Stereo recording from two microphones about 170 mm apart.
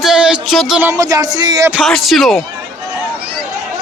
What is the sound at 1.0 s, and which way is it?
Speech, 20° right (ahead or behind).